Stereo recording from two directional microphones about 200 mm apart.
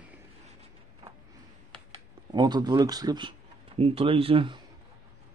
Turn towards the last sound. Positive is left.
turn(degrees=-25)  # may be behind; listen again after turning